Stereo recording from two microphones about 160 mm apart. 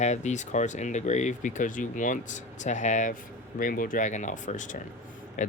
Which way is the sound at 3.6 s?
60° left (ahead or behind).